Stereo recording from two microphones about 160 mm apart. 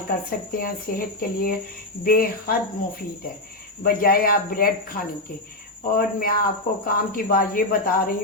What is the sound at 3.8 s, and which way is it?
Speech, 65° left (ahead or behind).